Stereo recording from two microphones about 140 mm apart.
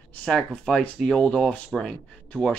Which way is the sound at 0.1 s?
5° left (ahead or behind).